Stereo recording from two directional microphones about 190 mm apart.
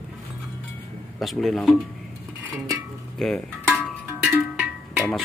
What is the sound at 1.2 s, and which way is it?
Speech, centre (ahead or behind).